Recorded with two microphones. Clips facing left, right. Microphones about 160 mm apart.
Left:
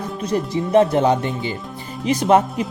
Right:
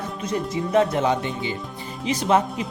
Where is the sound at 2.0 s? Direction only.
50° left (ahead or behind).